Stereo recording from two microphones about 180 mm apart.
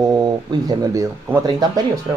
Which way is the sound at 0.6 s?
15° right (ahead or behind).